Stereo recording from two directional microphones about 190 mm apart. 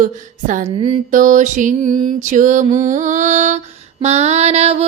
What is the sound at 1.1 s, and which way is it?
Mantra, 45° right (ahead or behind).